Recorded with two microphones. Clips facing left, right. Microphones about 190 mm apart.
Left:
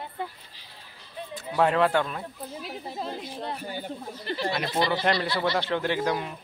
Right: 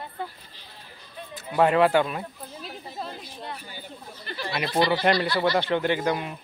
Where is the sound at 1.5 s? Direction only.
5° right (ahead or behind).